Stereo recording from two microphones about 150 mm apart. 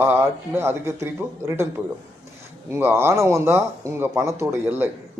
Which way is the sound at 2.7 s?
15° right (ahead or behind).